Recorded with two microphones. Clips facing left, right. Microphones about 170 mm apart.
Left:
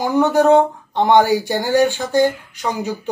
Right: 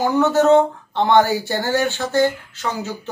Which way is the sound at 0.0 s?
15° left (ahead or behind).